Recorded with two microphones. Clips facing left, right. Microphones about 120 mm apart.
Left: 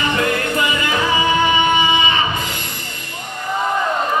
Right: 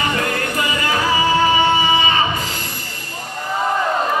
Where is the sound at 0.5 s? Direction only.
30° right (ahead or behind).